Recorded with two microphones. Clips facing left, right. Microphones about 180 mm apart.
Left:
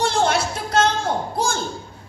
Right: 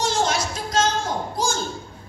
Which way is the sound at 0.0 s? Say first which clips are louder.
Left 3 dB; 60° left (ahead or behind).